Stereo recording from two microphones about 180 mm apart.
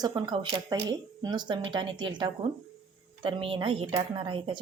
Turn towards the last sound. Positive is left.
turn(degrees=-30)  # may be behind; listen again after turning